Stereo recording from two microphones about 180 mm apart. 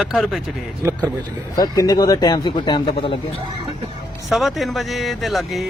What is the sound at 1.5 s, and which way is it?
A man's voice, 20° left (ahead or behind).